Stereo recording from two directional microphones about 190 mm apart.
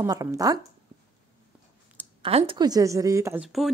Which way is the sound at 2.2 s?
30° right (ahead or behind).